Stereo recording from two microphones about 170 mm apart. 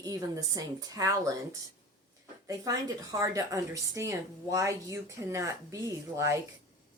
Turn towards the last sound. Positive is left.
turn(degrees=-20)  # may be behind; listen again after turning